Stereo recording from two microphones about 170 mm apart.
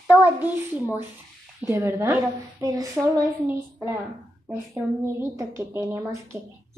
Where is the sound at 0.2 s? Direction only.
10° right (ahead or behind).